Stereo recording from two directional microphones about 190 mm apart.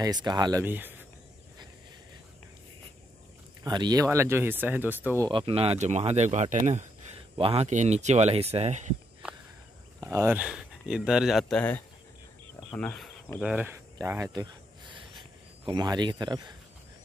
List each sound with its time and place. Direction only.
0.0 s speech: 20° right (ahead or behind)
3.6 s speech: 20° right (ahead or behind)
5.3 s speech: 30° right (ahead or behind)
9.9 s speech: 15° right (ahead or behind); by 13.1 s 5° left (ahead or behind)
13.4 s speech: 10° right (ahead or behind)
13.9 s a sound: 15° right (ahead or behind)